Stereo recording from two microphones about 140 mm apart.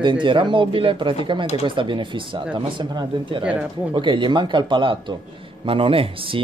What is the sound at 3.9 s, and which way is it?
Speech, 35° right (ahead or behind).